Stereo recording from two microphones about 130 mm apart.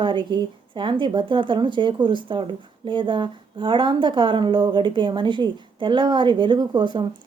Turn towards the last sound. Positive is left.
turn(degrees=-35)  # may be behind; listen again after turning